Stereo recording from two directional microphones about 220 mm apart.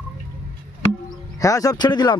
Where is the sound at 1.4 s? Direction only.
15° left (ahead or behind).